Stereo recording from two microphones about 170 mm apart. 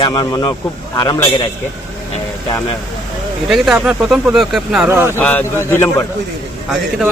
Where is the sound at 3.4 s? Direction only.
5° right (ahead or behind).